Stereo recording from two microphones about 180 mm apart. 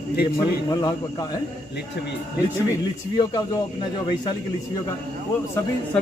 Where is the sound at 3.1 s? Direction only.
20° left (ahead or behind).